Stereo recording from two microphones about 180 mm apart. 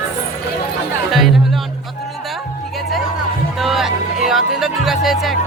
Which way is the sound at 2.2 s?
Centre (ahead or behind).